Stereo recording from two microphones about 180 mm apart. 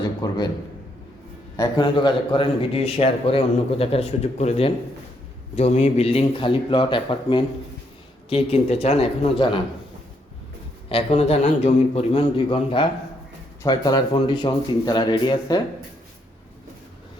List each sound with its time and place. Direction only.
0.0 s a sound: 25° left (ahead or behind)
1.5 s a man's voice: 25° left (ahead or behind)
10.8 s a man's voice: 35° left (ahead or behind)